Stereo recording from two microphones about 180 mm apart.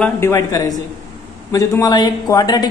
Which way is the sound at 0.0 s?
15° left (ahead or behind).